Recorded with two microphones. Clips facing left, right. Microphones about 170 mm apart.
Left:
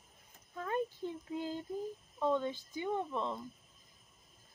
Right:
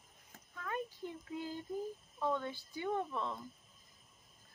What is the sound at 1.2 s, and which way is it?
Speech, 25° left (ahead or behind).